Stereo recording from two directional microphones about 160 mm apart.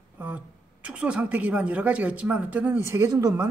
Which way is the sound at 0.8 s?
5° right (ahead or behind).